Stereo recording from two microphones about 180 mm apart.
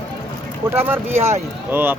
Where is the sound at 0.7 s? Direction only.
10° right (ahead or behind).